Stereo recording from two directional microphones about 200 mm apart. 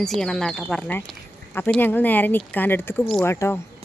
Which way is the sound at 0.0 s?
Centre (ahead or behind).